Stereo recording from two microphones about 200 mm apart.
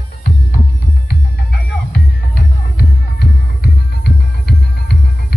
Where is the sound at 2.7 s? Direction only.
55° left (ahead or behind).